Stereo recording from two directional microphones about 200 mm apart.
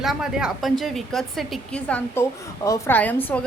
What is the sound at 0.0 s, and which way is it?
A woman's voice, centre (ahead or behind).